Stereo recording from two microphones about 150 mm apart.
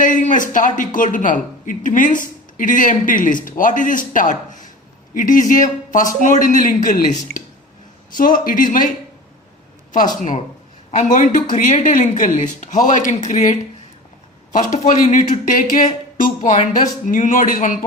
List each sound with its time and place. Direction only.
0.0 s speech: 60° left (ahead or behind)
8.1 s speech: 65° left (ahead or behind)
10.2 s speech: 60° left (ahead or behind)